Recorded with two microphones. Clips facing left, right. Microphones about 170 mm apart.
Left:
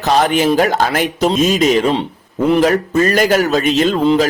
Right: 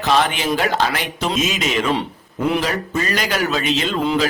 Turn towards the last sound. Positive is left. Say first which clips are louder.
# left 7 dB
turn(degrees=40)  # may be behind; listen again after turning